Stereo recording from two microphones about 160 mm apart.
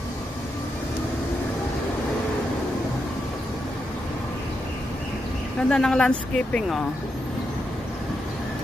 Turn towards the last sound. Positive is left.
turn(degrees=5)  # may be behind; listen again after turning